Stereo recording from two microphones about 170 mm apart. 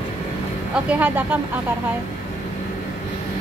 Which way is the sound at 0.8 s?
10° right (ahead or behind).